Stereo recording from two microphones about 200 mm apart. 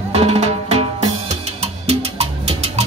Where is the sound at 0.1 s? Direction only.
30° right (ahead or behind).